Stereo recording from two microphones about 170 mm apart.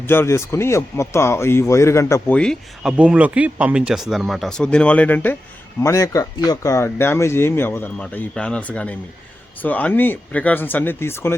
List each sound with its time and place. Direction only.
0.0 s speech: 15° left (ahead or behind)
3.0 s speech: 10° right (ahead or behind); by 11.3 s 15° left (ahead or behind)